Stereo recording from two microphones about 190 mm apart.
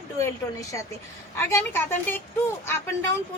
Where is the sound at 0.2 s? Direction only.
15° left (ahead or behind).